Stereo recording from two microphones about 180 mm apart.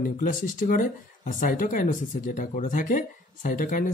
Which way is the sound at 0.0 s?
50° left (ahead or behind).